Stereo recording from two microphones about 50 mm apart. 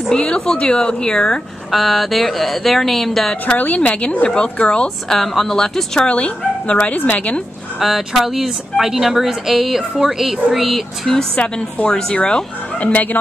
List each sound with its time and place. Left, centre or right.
0.1 s speech: centre
1.7 s speech: centre
3.5 s a woman's voice: left; by 6.0 s centre
6.0 s speech: left
7.8 s speech: centre
11.1 s a woman's voice: centre
12.8 s speech: left